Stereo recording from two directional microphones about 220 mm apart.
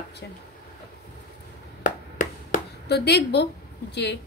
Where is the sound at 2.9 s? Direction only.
50° left (ahead or behind).